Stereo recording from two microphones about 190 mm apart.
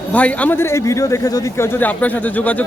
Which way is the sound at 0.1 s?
5° left (ahead or behind).